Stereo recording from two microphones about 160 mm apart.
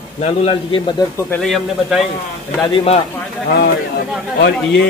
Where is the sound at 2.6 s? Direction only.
35° left (ahead or behind).